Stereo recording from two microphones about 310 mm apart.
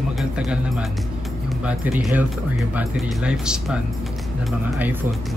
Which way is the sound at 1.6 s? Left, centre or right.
Centre.